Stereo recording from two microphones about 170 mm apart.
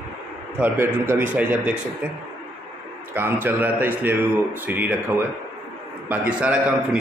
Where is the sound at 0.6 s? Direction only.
10° right (ahead or behind).